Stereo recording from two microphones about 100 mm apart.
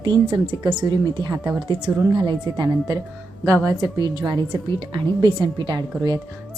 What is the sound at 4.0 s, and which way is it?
A woman's voice, 45° right (ahead or behind).